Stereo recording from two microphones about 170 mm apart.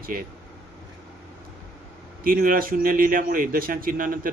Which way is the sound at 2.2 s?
55° right (ahead or behind).